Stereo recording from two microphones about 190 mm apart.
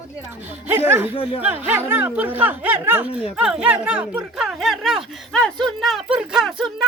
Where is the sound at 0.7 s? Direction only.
10° right (ahead or behind).